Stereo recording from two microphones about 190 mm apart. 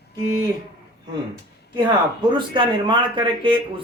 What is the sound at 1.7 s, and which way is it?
Speech, 25° right (ahead or behind).